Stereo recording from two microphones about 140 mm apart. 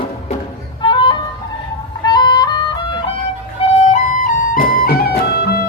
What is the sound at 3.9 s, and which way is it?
Music, 70° left (ahead or behind).